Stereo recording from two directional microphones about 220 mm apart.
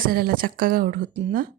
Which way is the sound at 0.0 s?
40° right (ahead or behind).